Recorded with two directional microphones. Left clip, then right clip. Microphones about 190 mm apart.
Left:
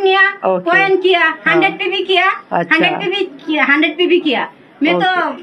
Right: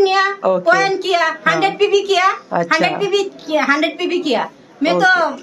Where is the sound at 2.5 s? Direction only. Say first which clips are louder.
Left 2 dB; 10° right (ahead or behind).